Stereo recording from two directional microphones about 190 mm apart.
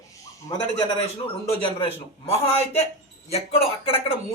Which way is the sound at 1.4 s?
25° left (ahead or behind).